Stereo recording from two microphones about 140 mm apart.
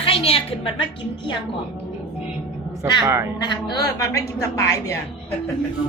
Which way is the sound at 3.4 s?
30° left (ahead or behind).